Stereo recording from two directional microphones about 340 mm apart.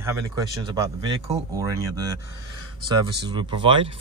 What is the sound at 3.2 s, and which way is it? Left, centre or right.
Speech, centre.